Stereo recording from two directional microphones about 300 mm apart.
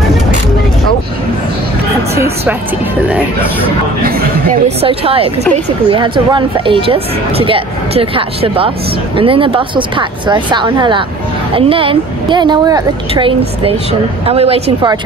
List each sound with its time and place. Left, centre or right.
2.1 s a woman's voice: centre
4.0 s speech: right